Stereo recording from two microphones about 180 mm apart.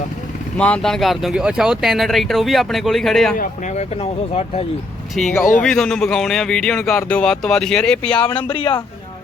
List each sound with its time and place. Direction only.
0.5 s speech: 5° left (ahead or behind)
3.3 s speech: 45° left (ahead or behind)
5.1 s speech: centre (ahead or behind)
8.4 s a man's voice: 30° left (ahead or behind)